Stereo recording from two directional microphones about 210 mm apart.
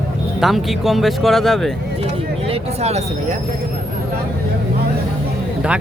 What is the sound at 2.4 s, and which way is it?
Speech, 30° right (ahead or behind).